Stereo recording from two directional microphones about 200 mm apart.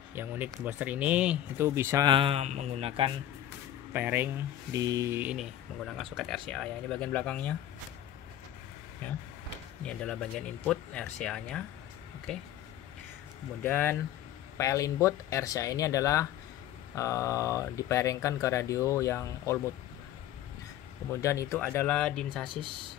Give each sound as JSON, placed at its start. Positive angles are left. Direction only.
{"t": 0.1, "sound": "speech", "side_deg": -10}
{"t": 3.9, "sound": "speech", "side_deg": -10}
{"t": 9.8, "sound": "speech", "side_deg": 5}
{"t": 13.7, "sound": "speech", "side_deg": 10}
{"t": 21.1, "sound": "speech", "side_deg": 15}
{"t": 22.5, "sound": "speech", "side_deg": -25}